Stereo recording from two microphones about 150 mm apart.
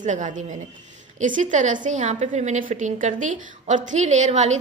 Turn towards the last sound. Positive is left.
turn(degrees=-50)  # may be behind; listen again after turning